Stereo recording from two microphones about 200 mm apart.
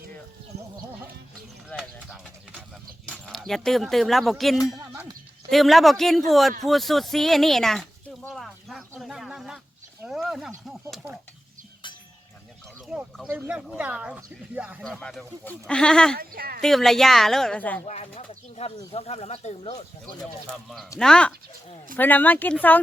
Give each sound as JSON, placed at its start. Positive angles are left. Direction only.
{"t": 1.8, "sound": "bird", "side_deg": 0}
{"t": 3.1, "sound": "speech", "side_deg": 0}
{"t": 8.2, "sound": "a sound", "side_deg": 0}
{"t": 10.0, "sound": "wild animals", "side_deg": 0}
{"t": 10.9, "sound": "speech", "side_deg": -10}
{"t": 12.9, "sound": "speech", "side_deg": 0}
{"t": 16.1, "sound": "speech", "side_deg": -50}
{"t": 16.6, "sound": "speech", "side_deg": 0}
{"t": 17.8, "sound": "speech", "side_deg": 35}
{"t": 21.0, "sound": "speech", "side_deg": 5}